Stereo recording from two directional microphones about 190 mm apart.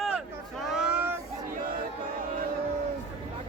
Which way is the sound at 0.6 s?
Centre (ahead or behind).